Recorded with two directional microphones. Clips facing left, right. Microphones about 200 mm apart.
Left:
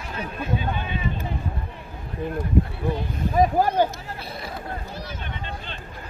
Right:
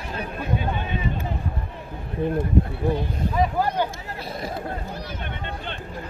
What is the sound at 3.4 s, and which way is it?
Speech, 45° left (ahead or behind).